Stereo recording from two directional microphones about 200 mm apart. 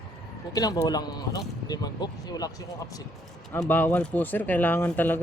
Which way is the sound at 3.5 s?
10° left (ahead or behind).